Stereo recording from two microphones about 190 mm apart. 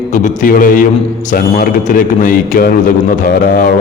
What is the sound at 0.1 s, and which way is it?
A man's voice, 40° left (ahead or behind).